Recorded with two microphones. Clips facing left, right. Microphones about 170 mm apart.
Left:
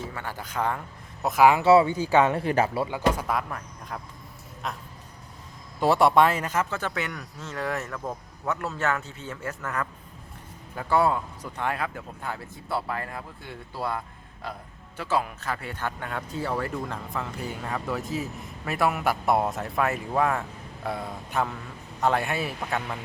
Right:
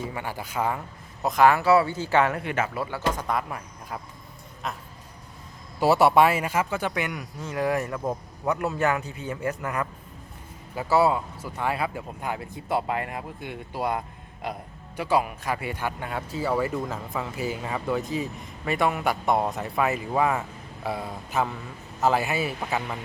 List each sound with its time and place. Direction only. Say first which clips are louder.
0.1 s speech: right 2 dB; 10° right (ahead or behind)
1.2 s speech: even; 5° left (ahead or behind)
1.6 s speech: left 2 dB; 20° left (ahead or behind)
2.3 s speech: left 4 dB; 35° left (ahead or behind)
2.8 s speech: left 2 dB; 15° left (ahead or behind)
3.5 s speech: right 1 dB; 5° right (ahead or behind)
5.8 s a man's voice: right 1 dB; 5° right (ahead or behind)